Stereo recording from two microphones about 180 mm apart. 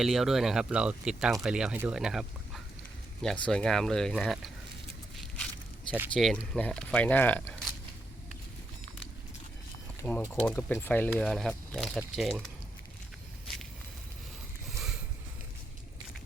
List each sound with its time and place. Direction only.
0.0 s speech: centre (ahead or behind)
5.9 s speech: centre (ahead or behind)
10.0 s speech: 10° left (ahead or behind)